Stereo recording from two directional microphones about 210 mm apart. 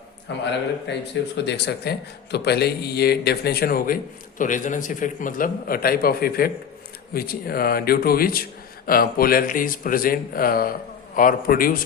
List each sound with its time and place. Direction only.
0.3 s a man's voice: 55° left (ahead or behind)